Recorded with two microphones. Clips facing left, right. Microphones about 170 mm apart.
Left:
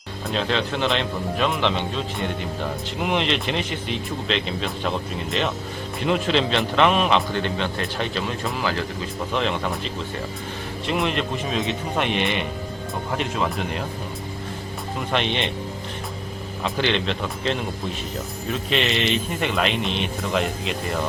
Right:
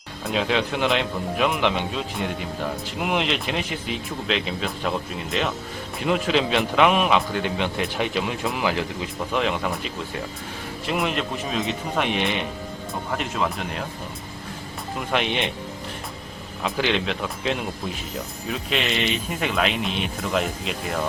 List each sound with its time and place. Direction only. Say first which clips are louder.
0.3 s speech: right 1 dB; 10° right (ahead or behind)
15.1 s speech: even; 5° right (ahead or behind)
16.6 s speech: even; 5° right (ahead or behind)